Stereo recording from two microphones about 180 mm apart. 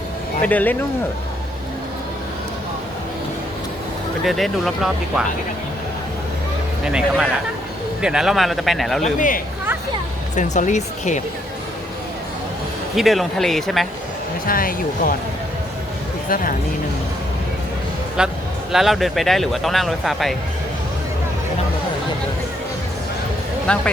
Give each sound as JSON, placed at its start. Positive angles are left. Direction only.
{"t": 0.4, "sound": "speech", "side_deg": 10}
{"t": 4.3, "sound": "speech", "side_deg": 0}
{"t": 6.8, "sound": "speech", "side_deg": -5}
{"t": 9.1, "sound": "speech", "side_deg": 45}
{"t": 13.0, "sound": "speech", "side_deg": 0}
{"t": 14.4, "sound": "speech", "side_deg": 55}
{"t": 16.3, "sound": "speech", "side_deg": 50}
{"t": 18.2, "sound": "speech", "side_deg": -5}
{"t": 23.7, "sound": "speech", "side_deg": 5}